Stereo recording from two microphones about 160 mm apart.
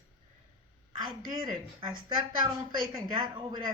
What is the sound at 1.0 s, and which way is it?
Speech, 25° right (ahead or behind).